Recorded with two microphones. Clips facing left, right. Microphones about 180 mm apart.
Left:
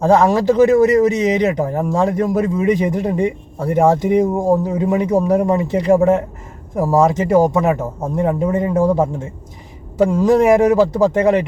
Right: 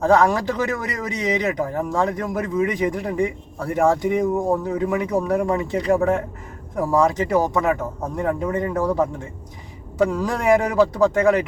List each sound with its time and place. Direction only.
0.0 s a man's voice: 25° left (ahead or behind)